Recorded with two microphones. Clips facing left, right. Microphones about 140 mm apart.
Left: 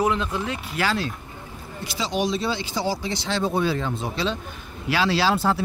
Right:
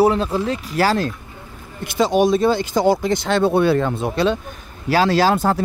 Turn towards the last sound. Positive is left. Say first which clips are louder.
# right 5 dB
turn(degrees=-45)  # may be behind; listen again after turning